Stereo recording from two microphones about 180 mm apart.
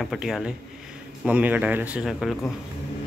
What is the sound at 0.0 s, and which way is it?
A man's voice, centre (ahead or behind).